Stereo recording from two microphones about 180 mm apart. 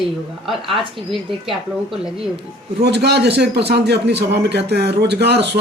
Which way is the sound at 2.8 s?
70° right (ahead or behind).